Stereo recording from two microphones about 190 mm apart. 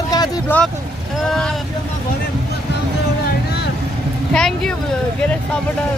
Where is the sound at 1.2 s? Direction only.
Centre (ahead or behind).